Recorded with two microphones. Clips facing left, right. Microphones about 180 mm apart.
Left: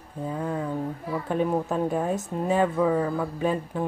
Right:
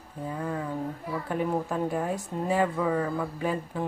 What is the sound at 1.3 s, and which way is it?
Speech, 25° left (ahead or behind).